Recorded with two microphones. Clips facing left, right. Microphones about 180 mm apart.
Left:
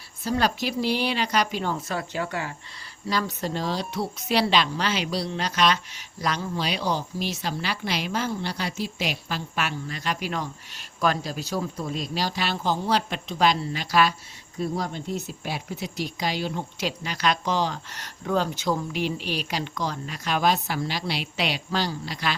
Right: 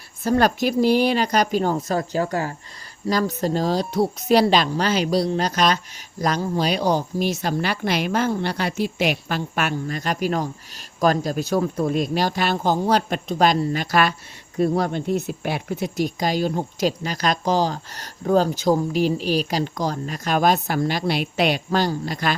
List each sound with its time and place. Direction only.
0.3 s speech: 50° right (ahead or behind)